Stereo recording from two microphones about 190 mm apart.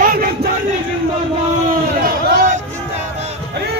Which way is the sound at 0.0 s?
50° right (ahead or behind).